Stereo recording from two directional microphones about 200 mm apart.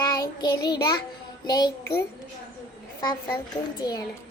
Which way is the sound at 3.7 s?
20° left (ahead or behind).